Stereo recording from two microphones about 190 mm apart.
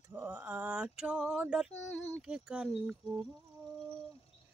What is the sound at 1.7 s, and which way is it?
Child singing, 75° left (ahead or behind).